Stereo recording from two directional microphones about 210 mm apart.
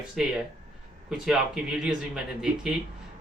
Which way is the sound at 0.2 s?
5° right (ahead or behind).